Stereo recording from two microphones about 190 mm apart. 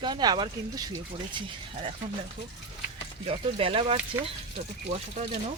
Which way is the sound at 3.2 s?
30° right (ahead or behind).